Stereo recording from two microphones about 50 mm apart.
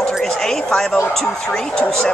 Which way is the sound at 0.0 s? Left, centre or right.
Centre.